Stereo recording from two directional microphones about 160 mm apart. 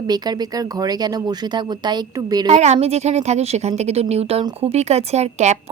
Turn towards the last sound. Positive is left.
turn(degrees=-45)  # may be behind; listen again after turning